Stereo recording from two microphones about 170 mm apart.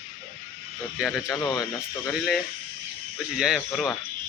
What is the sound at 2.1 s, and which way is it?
Speech, centre (ahead or behind).